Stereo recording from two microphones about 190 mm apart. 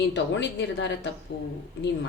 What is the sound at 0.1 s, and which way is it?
Speech, 70° left (ahead or behind).